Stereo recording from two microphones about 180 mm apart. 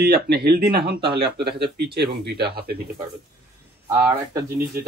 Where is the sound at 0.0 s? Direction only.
60° right (ahead or behind).